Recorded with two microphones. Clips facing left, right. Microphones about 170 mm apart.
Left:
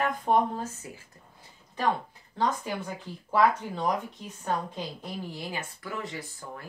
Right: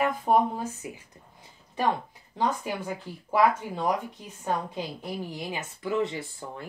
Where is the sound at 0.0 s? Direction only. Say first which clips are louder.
Right 2 dB; 5° right (ahead or behind).